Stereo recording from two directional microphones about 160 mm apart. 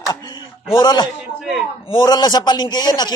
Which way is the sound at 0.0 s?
25° left (ahead or behind).